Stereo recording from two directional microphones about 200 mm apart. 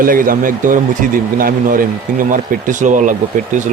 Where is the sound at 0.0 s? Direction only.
45° right (ahead or behind).